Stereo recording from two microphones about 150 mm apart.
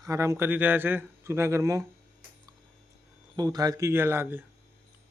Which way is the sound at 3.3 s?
25° right (ahead or behind).